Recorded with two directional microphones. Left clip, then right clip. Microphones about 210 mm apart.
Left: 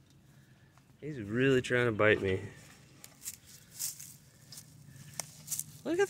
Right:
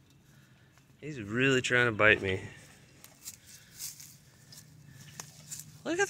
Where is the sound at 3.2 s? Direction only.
35° left (ahead or behind).